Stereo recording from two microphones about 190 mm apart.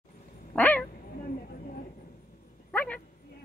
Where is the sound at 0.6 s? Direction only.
10° left (ahead or behind).